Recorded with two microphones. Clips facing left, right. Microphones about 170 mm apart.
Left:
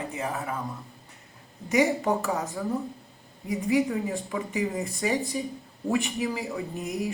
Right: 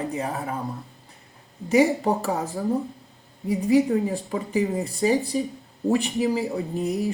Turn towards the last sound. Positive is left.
turn(degrees=-30)  # may be behind; listen again after turning